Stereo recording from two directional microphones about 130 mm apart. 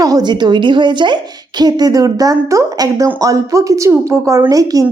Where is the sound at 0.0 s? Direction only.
30° right (ahead or behind).